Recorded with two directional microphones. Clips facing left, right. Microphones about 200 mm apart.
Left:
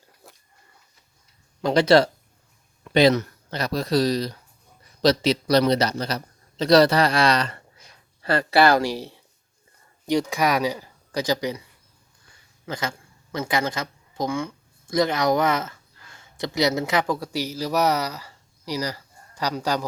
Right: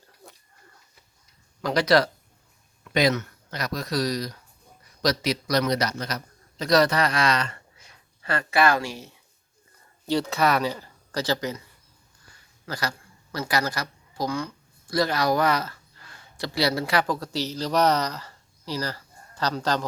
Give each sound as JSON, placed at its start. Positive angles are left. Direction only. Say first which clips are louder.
{"t": 0.2, "sound": "a sound", "louder": "right 2 dB", "side_deg": 0}
{"t": 1.6, "sound": "a man's voice", "louder": "left 4 dB", "side_deg": 25}
{"t": 10.1, "sound": "speech", "louder": "left 1 dB", "side_deg": 15}
{"t": 12.6, "sound": "a man's voice", "louder": "left 2 dB", "side_deg": 25}